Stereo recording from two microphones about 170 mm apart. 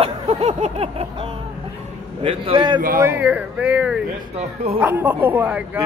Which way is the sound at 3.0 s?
10° right (ahead or behind).